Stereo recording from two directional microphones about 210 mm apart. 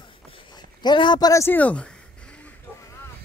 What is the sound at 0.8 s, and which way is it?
Speech, 20° left (ahead or behind).